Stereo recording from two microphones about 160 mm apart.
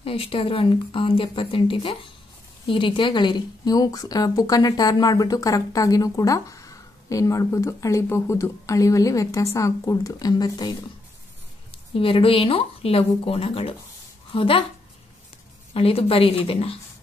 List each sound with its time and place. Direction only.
0.0 s a woman's voice: 35° left (ahead or behind)
11.9 s a woman's voice: 35° left (ahead or behind)
15.7 s speech: 35° left (ahead or behind)